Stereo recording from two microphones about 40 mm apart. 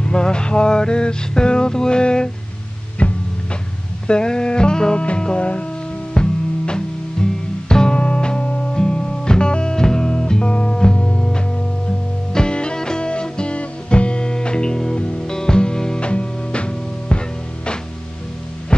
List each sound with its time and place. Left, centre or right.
0.0 s music: left
3.0 s music: left
4.1 s music: centre
18.7 s music: left